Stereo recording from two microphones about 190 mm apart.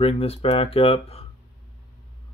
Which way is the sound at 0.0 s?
30° left (ahead or behind).